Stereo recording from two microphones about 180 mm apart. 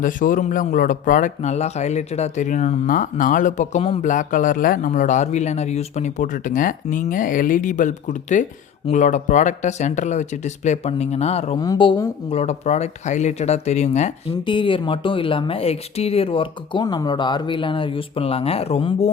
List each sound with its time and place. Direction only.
0.0 s speech: 50° left (ahead or behind)
4.1 s speech: 45° left (ahead or behind)
11.6 s speech: 25° left (ahead or behind); by 14.3 s 40° left (ahead or behind)
14.4 s speech: 25° left (ahead or behind)